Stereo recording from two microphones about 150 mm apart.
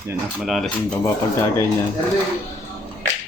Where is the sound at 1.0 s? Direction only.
20° left (ahead or behind).